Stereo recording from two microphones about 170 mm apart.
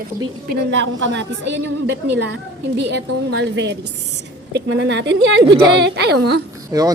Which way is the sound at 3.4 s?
90° right.